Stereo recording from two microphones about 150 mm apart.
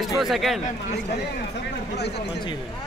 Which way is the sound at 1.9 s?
90° left.